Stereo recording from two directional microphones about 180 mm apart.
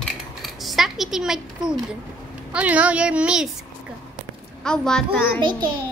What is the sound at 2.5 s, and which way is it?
Speech, 5° right (ahead or behind).